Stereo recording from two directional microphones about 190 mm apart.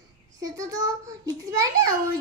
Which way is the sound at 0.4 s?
20° right (ahead or behind).